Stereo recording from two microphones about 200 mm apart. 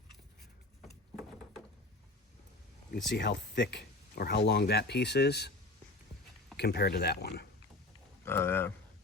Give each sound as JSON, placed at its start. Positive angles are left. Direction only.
{"t": 3.1, "sound": "speech", "side_deg": 60}
{"t": 6.6, "sound": "speech", "side_deg": 55}
{"t": 8.2, "sound": "speech", "side_deg": 10}